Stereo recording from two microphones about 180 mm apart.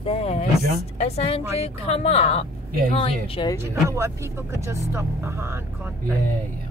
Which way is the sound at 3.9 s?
15° right (ahead or behind).